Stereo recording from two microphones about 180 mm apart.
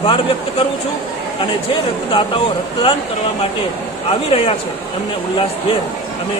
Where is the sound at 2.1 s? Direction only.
30° left (ahead or behind).